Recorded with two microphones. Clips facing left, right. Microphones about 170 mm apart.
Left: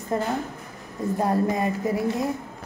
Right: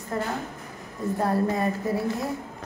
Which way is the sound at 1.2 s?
15° left (ahead or behind).